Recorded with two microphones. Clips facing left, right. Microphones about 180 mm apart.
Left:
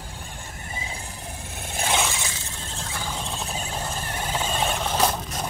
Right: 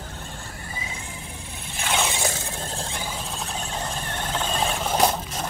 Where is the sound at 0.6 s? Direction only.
30° left (ahead or behind).